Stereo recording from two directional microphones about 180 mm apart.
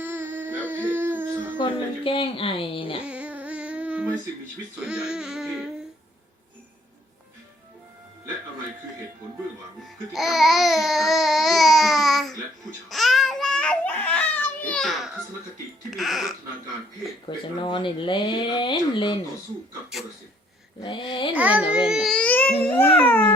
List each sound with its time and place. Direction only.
0.0 s a sound: 10° right (ahead or behind)
1.5 s speech: 25° left (ahead or behind)
3.0 s a sound: 5° right (ahead or behind)
10.1 s babbling: centre (ahead or behind)
15.9 s music: centre (ahead or behind)
17.2 s speech: 25° left (ahead or behind)
20.8 s speech: 30° left (ahead or behind)
21.3 s a child's voice: 10° right (ahead or behind)
21.7 s a sound: 5° right (ahead or behind)
22.6 s speech: 10° left (ahead or behind)